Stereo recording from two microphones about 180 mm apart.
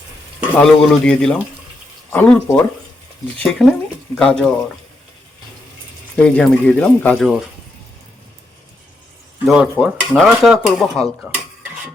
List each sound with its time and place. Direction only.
0.5 s speech: 5° left (ahead or behind)
6.2 s speech: 5° left (ahead or behind)
7.2 s speech: 5° right (ahead or behind)
9.5 s speech: 5° right (ahead or behind)
11.2 s dishes: 10° right (ahead or behind)